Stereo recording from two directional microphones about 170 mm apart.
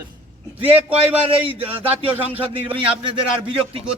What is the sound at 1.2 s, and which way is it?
Speech, 30° right (ahead or behind).